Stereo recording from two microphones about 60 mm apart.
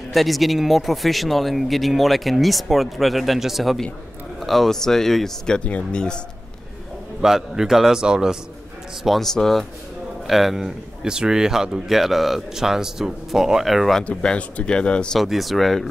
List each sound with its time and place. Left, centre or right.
0.1 s a man's voice: centre
5.6 s speech: centre
7.2 s a man's voice: centre
9.0 s a man's voice: centre
14.0 s speech: centre
15.1 s a man's voice: centre